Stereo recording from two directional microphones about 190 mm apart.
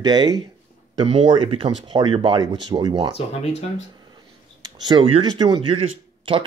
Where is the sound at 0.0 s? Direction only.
20° right (ahead or behind).